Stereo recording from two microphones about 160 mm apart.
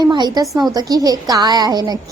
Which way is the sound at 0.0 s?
25° right (ahead or behind).